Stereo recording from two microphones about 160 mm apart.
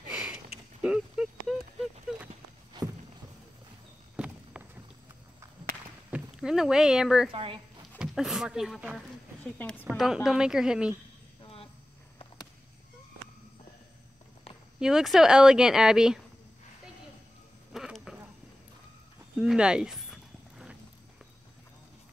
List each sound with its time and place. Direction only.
0.1 s a sound: 5° right (ahead or behind)
4.6 s clip-clop: 10° right (ahead or behind)
6.0 s speech: 5° right (ahead or behind)
7.2 s speech: 35° right (ahead or behind)
8.0 s a woman's voice: centre (ahead or behind)
9.6 s a woman's voice: 10° left (ahead or behind)
9.8 s a woman's voice: 5° right (ahead or behind)
14.8 s a woman's voice: 5° right (ahead or behind)
17.7 s a sound: centre (ahead or behind)
19.4 s horse: 5° right (ahead or behind)